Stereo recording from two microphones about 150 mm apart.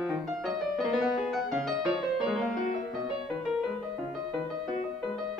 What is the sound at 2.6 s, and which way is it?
Music, 55° left (ahead or behind).